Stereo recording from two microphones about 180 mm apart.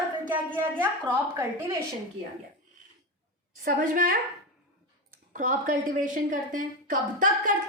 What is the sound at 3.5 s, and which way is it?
Speech, 50° right (ahead or behind).